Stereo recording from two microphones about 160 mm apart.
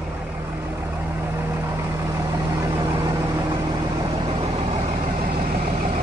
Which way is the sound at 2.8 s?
25° right (ahead or behind).